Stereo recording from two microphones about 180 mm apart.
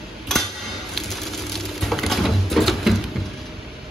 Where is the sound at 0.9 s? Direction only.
Centre (ahead or behind).